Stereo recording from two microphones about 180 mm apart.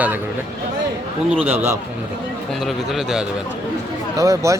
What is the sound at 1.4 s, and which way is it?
Speech, 15° right (ahead or behind).